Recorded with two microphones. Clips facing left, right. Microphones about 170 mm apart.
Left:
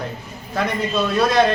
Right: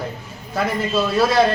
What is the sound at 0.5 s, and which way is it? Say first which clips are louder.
Speech: right 1 dB; 5° right (ahead or behind).